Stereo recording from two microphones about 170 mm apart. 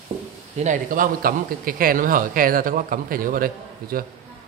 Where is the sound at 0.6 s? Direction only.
50° right (ahead or behind).